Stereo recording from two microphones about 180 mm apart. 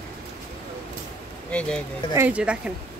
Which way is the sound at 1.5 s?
5° left (ahead or behind).